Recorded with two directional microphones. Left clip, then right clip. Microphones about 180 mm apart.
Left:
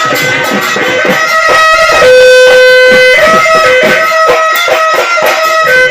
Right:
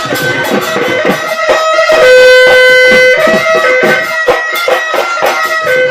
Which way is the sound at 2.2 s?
35° left (ahead or behind).